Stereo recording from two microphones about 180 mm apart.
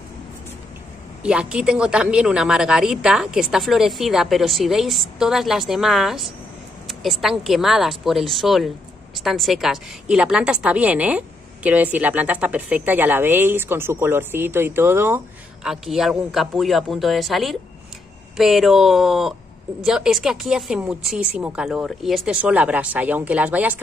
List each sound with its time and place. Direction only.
1.2 s a woman's voice: 5° right (ahead or behind)